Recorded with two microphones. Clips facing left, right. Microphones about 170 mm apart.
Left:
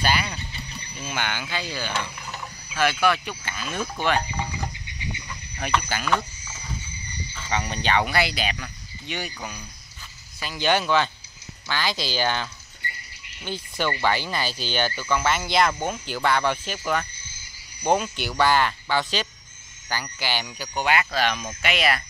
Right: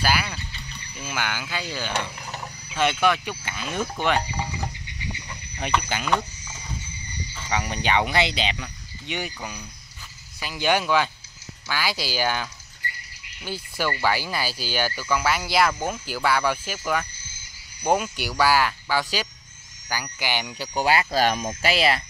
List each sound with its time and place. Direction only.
0.0 s speech: 5° right (ahead or behind)
2.1 s speech: 25° right (ahead or behind)
5.7 s speech: 20° right (ahead or behind)
10.4 s speech: 10° right (ahead or behind)
20.5 s speech: 30° right (ahead or behind)